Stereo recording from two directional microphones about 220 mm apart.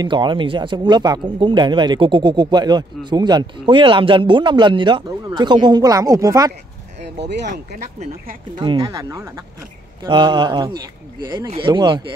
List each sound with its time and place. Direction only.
0.0 s speech: 20° right (ahead or behind)
8.5 s speech: 15° right (ahead or behind)